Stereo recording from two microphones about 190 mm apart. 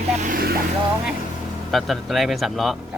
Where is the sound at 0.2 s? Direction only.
50° right (ahead or behind).